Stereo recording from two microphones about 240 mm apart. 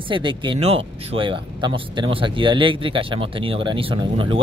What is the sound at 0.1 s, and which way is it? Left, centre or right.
Speech, centre.